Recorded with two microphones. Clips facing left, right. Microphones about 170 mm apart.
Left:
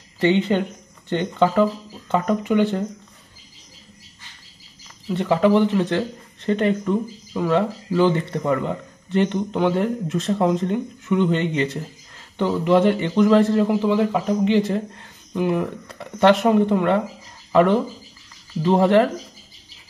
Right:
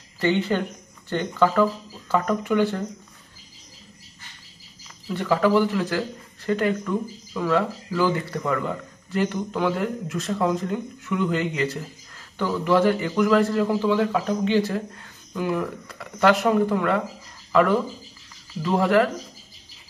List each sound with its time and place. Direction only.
0.2 s speech: 20° left (ahead or behind)
5.0 s speech: 20° left (ahead or behind)
13.7 s speech: 15° left (ahead or behind)